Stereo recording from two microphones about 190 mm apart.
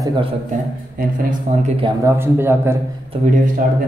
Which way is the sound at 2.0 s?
10° right (ahead or behind).